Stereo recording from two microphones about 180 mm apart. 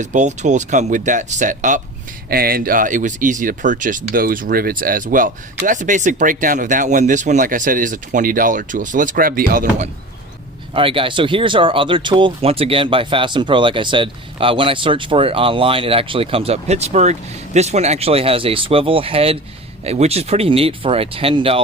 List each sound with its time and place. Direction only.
0.0 s speech: 40° right (ahead or behind)
2.3 s speech: 55° right (ahead or behind)
10.8 s speech: 30° right (ahead or behind)